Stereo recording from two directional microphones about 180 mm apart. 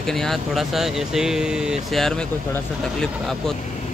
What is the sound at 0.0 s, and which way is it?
Speech, centre (ahead or behind).